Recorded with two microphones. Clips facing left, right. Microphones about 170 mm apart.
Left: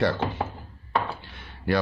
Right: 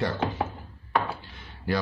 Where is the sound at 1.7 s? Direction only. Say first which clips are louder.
Left 3 dB; 65° left (ahead or behind).